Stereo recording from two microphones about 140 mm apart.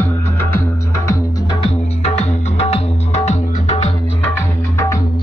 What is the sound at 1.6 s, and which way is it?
Music, 50° left (ahead or behind).